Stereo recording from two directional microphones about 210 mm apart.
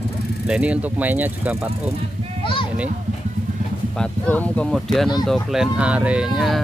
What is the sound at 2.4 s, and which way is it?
Speech, 25° left (ahead or behind).